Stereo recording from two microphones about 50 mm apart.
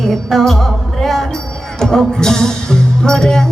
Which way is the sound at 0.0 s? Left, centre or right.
Centre.